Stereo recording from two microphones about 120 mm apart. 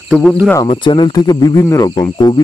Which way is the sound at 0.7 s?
45° left (ahead or behind).